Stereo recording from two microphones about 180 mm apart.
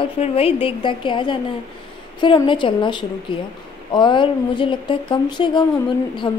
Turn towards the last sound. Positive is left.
turn(degrees=25)  # may be behind; listen again after turning